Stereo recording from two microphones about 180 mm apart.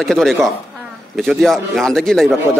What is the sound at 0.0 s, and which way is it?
A man's voice, centre (ahead or behind).